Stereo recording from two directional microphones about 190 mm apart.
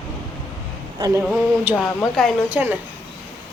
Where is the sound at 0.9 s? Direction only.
20° right (ahead or behind).